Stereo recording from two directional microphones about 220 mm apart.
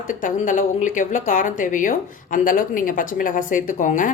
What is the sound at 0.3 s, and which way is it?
A woman's voice, 35° left (ahead or behind).